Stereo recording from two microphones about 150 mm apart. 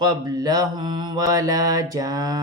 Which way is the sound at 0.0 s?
25° right (ahead or behind).